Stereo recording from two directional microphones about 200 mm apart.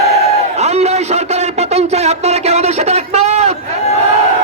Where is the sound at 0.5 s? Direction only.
35° right (ahead or behind).